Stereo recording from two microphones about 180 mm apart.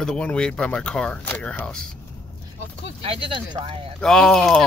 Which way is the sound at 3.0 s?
30° right (ahead or behind).